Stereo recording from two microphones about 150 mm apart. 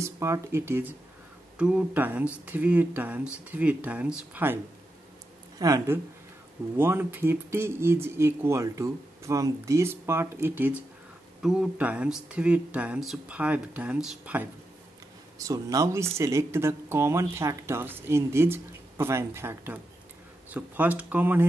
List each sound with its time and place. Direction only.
0.0 s speech: 20° right (ahead or behind)
5.6 s speech: 25° right (ahead or behind)
15.3 s speech: 20° right (ahead or behind)